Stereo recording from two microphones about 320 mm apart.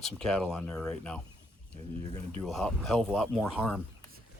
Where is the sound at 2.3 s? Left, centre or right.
Centre.